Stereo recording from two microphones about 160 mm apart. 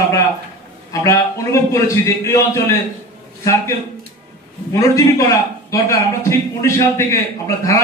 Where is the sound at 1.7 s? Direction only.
20° left (ahead or behind).